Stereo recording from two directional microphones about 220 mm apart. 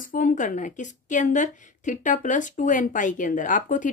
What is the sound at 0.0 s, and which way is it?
A woman's voice, 35° left (ahead or behind).